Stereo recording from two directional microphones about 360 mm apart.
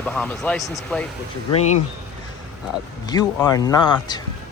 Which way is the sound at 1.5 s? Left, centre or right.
Centre.